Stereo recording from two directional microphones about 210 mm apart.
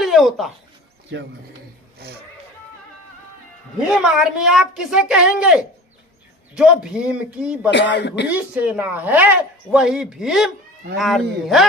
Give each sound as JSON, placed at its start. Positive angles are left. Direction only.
{"t": 0.0, "sound": "speech", "side_deg": 0}
{"t": 1.1, "sound": "speech", "side_deg": -55}
{"t": 3.8, "sound": "speech", "side_deg": 0}
{"t": 7.7, "sound": "speech", "side_deg": 55}
{"t": 8.3, "sound": "speech", "side_deg": -5}